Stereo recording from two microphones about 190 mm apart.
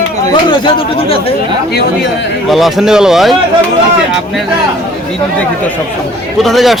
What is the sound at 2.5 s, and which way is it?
Speech, centre (ahead or behind).